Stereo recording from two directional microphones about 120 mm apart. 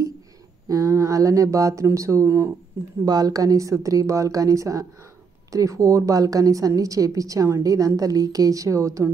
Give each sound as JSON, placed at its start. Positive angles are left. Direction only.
{"t": 0.7, "sound": "a woman's voice", "side_deg": -30}